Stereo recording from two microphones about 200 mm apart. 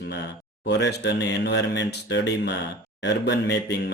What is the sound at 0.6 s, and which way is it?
Speech, 60° left (ahead or behind).